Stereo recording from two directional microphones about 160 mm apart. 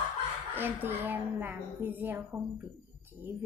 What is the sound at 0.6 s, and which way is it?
A woman's voice, 15° right (ahead or behind).